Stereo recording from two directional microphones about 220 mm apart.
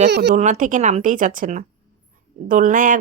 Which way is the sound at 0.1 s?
50° right (ahead or behind).